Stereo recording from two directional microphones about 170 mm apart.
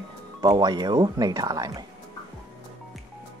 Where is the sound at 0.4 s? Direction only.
25° right (ahead or behind).